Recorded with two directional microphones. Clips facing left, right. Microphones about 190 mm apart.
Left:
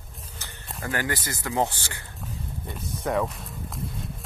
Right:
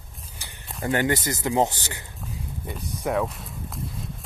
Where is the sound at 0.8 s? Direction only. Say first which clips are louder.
Right 6 dB; 20° right (ahead or behind).